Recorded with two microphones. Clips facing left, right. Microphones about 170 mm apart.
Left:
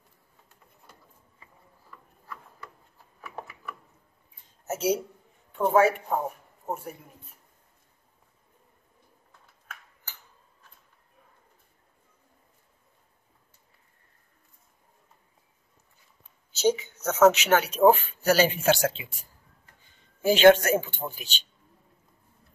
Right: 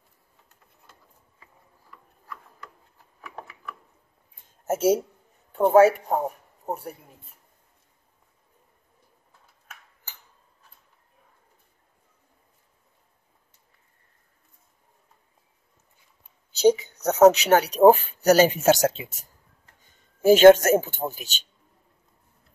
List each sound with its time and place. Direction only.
4.6 s speech: 45° right (ahead or behind)
16.5 s a man's voice: 35° right (ahead or behind)